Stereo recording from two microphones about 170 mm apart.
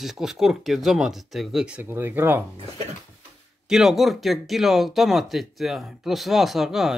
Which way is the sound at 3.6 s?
5° right (ahead or behind).